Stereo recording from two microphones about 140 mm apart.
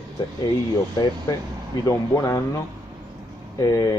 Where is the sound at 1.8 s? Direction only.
25° left (ahead or behind).